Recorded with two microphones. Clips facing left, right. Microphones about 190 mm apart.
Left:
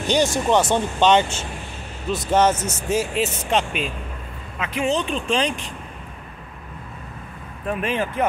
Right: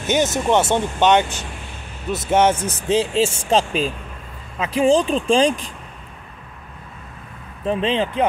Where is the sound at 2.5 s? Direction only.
30° right (ahead or behind).